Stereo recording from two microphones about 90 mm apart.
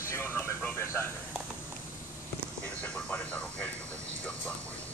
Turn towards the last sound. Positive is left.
turn(degrees=15)  # may be behind; listen again after turning